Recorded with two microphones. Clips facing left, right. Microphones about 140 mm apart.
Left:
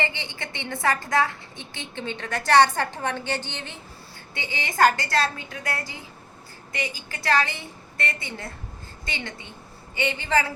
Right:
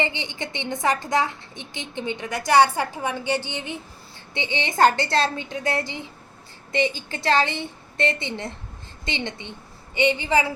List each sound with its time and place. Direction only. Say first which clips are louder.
0.0 s a woman's voice: right 3 dB; 20° right (ahead or behind)
4.4 s a woman's voice: right 2 dB; 25° right (ahead or behind)